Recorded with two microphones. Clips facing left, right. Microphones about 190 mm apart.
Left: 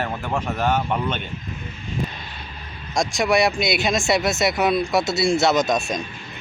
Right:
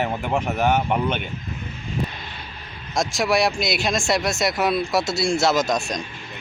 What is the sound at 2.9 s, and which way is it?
Speech, centre (ahead or behind).